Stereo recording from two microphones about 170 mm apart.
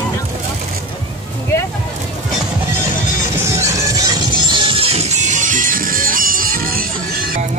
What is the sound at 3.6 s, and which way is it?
Music, 20° right (ahead or behind).